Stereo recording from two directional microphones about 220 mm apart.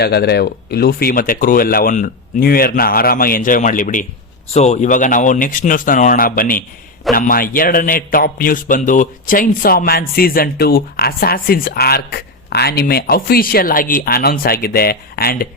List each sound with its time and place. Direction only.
0.0 s a man's voice: 45° left (ahead or behind)